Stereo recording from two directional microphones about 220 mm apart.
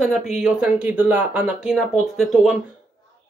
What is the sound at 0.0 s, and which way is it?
Speech, centre (ahead or behind).